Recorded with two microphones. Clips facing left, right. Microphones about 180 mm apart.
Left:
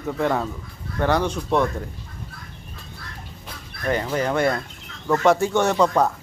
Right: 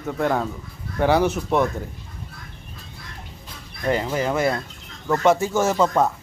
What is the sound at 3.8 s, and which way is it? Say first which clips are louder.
Speech: right 1 dB; 15° right (ahead or behind).